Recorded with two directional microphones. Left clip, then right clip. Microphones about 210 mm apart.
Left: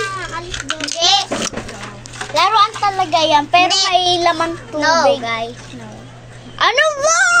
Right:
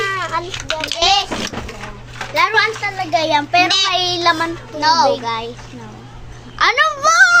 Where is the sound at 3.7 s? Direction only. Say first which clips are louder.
Even; centre (ahead or behind).